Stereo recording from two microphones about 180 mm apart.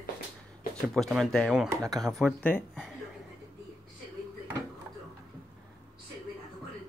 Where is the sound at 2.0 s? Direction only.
5° left (ahead or behind).